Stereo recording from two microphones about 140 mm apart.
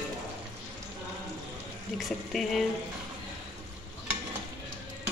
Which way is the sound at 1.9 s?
Centre (ahead or behind).